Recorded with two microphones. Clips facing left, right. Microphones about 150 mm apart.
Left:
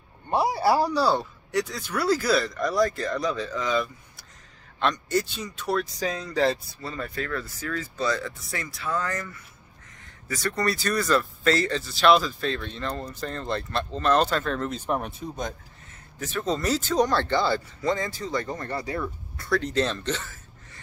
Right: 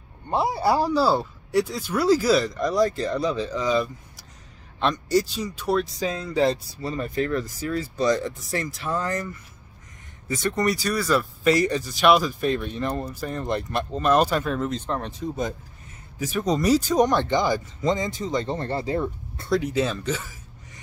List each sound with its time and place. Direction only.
0.3 s speech: 5° left (ahead or behind)
2.5 s speech: 20° right (ahead or behind)
4.7 s a man's voice: 5° right (ahead or behind)
14.7 s speech: 10° left (ahead or behind)
16.2 s speech: 10° right (ahead or behind)
19.6 s speech: 10° right (ahead or behind)